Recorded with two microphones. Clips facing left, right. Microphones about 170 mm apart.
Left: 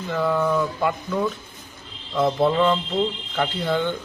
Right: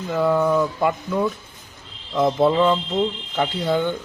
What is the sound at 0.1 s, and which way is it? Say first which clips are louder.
Speech: right 3 dB; 10° right (ahead or behind).